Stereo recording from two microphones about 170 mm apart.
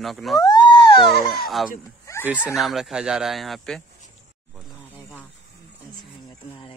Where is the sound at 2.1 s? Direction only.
20° left (ahead or behind).